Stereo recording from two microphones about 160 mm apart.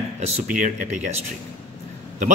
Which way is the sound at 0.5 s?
55° right (ahead or behind).